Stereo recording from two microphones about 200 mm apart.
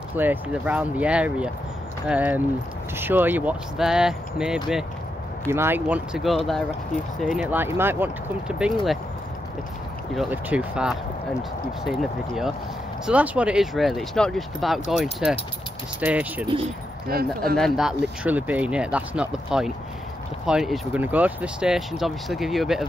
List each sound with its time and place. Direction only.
0.1 s speech: 10° right (ahead or behind)
10.1 s speech: 5° right (ahead or behind)
17.1 s speech: 50° right (ahead or behind)
17.6 s speech: centre (ahead or behind)